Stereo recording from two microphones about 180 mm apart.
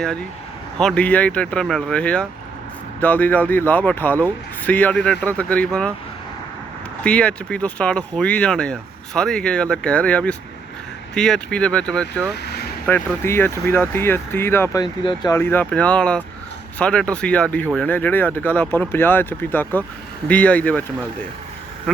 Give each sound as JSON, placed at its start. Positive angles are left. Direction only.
{"t": 0.8, "sound": "speech", "side_deg": 5}
{"t": 7.0, "sound": "speech", "side_deg": 5}
{"t": 12.3, "sound": "vehicle", "side_deg": 65}
{"t": 12.8, "sound": "speech", "side_deg": 10}